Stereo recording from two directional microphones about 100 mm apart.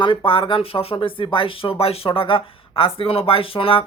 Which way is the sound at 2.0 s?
60° left (ahead or behind).